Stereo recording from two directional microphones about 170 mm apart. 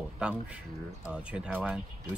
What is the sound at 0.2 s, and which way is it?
Speech, 5° right (ahead or behind).